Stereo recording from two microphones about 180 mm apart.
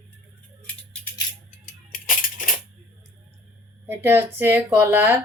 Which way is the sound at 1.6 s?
50° left (ahead or behind).